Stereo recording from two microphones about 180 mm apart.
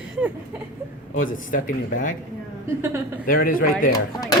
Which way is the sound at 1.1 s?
50° left (ahead or behind).